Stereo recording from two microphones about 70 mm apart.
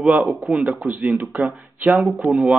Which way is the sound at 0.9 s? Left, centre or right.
Right.